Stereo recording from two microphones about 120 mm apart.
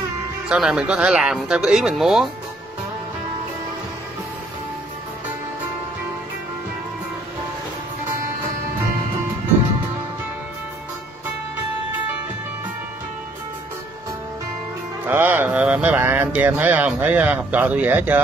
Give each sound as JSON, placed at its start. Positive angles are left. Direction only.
{"t": 0.5, "sound": "speech", "side_deg": -5}
{"t": 15.0, "sound": "speech", "side_deg": -15}